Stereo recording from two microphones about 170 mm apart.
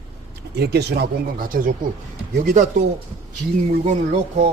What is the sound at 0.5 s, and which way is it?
A man's voice, 70° right (ahead or behind).